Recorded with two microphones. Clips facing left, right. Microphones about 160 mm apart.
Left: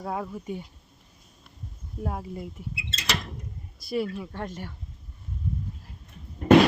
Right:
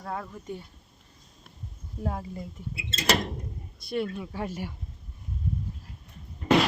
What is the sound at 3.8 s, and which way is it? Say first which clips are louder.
Speech: left 1 dB; centre (ahead or behind).